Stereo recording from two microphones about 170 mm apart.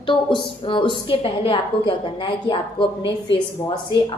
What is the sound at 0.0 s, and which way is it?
A woman's voice, 30° left (ahead or behind).